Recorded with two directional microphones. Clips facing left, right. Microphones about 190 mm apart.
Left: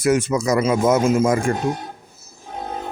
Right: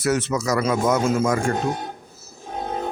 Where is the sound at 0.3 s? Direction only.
15° left (ahead or behind).